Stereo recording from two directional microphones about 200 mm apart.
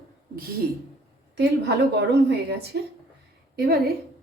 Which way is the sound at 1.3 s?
55° right (ahead or behind).